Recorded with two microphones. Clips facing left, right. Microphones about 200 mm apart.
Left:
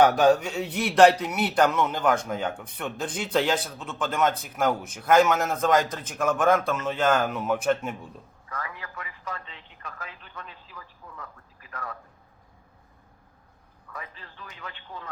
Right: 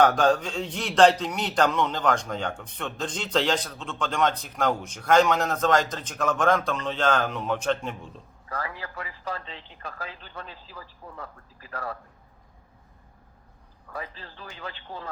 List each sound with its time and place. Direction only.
0.0 s a man's voice: 10° left (ahead or behind)
8.4 s speech: 30° right (ahead or behind)
13.9 s speech: 30° right (ahead or behind)